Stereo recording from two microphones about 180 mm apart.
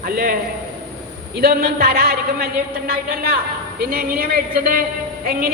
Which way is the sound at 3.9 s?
55° right (ahead or behind).